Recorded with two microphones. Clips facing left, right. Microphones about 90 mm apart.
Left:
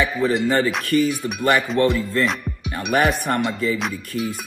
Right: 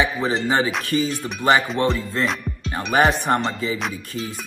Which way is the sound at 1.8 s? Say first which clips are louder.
Left 3 dB; 20° right (ahead or behind).